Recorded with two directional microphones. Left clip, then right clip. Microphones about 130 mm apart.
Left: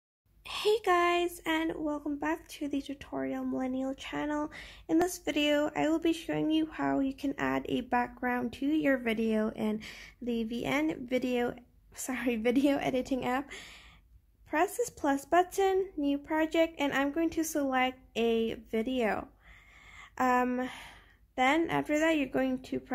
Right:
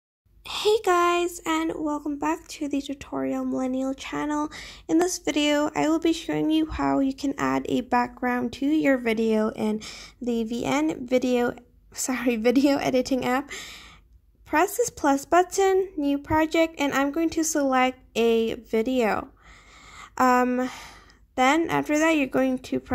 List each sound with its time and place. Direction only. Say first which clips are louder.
0.5 s speech: right 6 dB; 40° right (ahead or behind)
20.0 s a sound: right 8 dB; 40° right (ahead or behind)
20.4 s speech: right 7 dB; 40° right (ahead or behind)